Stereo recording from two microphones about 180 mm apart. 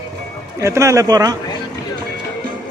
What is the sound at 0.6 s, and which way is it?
Speech, 15° right (ahead or behind).